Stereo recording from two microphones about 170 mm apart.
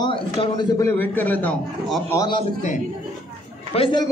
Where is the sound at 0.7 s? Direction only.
15° left (ahead or behind).